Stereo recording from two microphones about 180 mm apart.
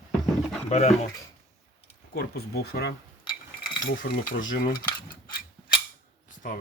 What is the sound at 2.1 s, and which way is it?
Speech, 60° left (ahead or behind).